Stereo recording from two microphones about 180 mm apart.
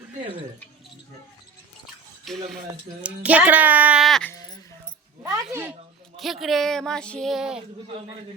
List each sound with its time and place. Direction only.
2.2 s speech: centre (ahead or behind)
5.2 s speech: 15° right (ahead or behind)
6.1 s speech: centre (ahead or behind)